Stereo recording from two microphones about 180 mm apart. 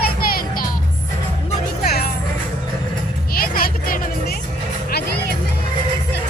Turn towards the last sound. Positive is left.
turn(degrees=50)  # may be behind; listen again after turning